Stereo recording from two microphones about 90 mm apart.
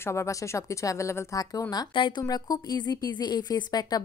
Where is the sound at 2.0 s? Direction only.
55° left (ahead or behind).